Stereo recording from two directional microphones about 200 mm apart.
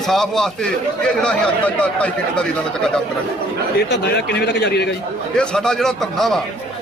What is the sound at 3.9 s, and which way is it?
A man's voice, 55° left (ahead or behind).